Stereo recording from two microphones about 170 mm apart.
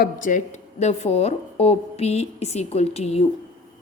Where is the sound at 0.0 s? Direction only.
50° left (ahead or behind).